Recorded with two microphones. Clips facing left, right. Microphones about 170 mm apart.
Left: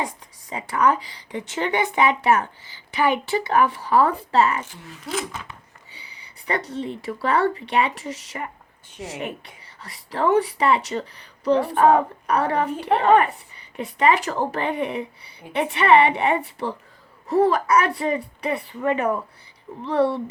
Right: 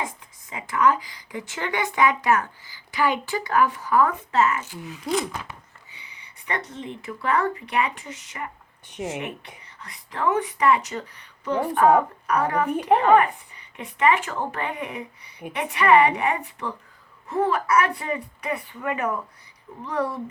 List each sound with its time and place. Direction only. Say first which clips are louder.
0.5 s speech: left 1 dB; 30° left (ahead or behind)
5.9 s speech: left 3 dB; 35° left (ahead or behind)
9.0 s speech: right 5 dB; 20° right (ahead or behind)
9.8 s speech: left 3 dB; 35° left (ahead or behind)